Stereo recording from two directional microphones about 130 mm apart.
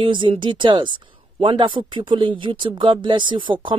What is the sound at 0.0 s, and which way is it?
Speech, 40° right (ahead or behind).